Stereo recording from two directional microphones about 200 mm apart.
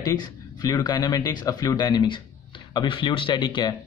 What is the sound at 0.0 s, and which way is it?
A man's voice, 20° left (ahead or behind).